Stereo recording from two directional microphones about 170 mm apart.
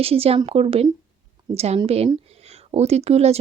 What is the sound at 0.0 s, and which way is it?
A woman's voice, 35° right (ahead or behind).